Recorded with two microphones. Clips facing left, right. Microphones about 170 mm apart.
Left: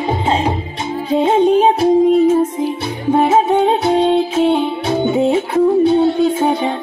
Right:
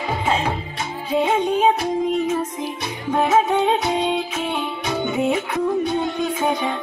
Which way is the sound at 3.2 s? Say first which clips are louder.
Left 3 dB; 30° left (ahead or behind).